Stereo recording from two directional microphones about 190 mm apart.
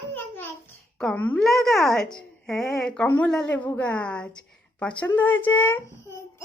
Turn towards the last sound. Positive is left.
turn(degrees=15)  # may be behind; listen again after turning